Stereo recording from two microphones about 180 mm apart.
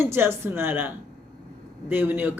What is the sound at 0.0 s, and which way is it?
Speech, 15° right (ahead or behind).